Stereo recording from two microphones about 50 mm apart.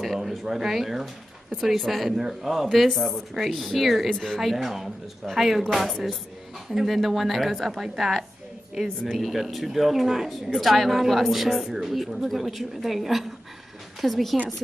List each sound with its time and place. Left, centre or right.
0.0 s speech: centre